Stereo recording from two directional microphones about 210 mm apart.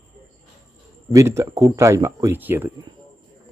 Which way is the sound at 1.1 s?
15° right (ahead or behind).